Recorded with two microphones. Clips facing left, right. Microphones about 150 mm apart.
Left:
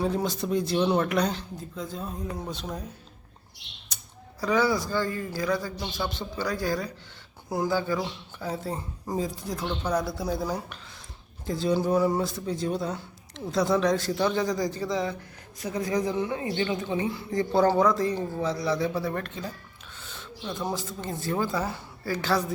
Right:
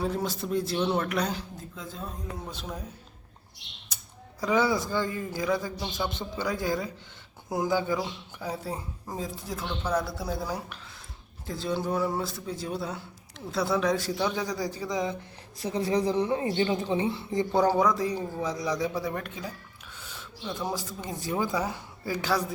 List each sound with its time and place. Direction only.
0.0 s a man's voice: centre (ahead or behind)
4.4 s a man's voice: 20° right (ahead or behind)
15.6 s speech: 30° right (ahead or behind); by 19.5 s 10° right (ahead or behind)
20.0 s a sound: 10° right (ahead or behind)
20.7 s speech: 10° right (ahead or behind)